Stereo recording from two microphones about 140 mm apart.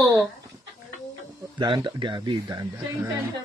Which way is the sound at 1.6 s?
35° right (ahead or behind).